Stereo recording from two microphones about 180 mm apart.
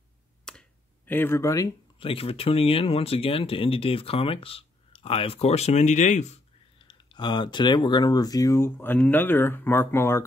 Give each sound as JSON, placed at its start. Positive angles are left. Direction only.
{"t": 0.5, "sound": "finger snapping", "side_deg": 5}
{"t": 2.0, "sound": "speech", "side_deg": 30}
{"t": 6.8, "sound": "speech", "side_deg": 25}